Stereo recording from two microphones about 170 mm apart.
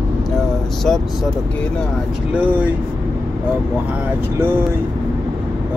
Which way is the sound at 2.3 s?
10° right (ahead or behind).